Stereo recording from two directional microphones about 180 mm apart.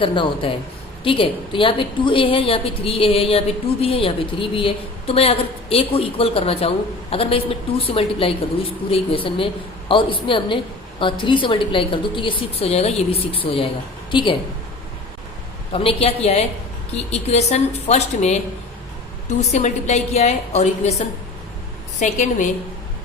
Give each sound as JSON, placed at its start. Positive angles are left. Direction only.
{"t": 0.0, "sound": "a woman's voice", "side_deg": 30}
{"t": 15.7, "sound": "a woman's voice", "side_deg": 30}